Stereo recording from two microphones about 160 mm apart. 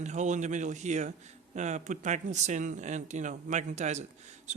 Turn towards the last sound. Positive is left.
turn(degrees=-45)  # may be behind; listen again after turning